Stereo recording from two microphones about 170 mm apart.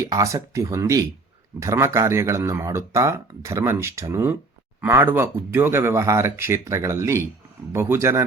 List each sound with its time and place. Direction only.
0.1 s speech: 20° right (ahead or behind)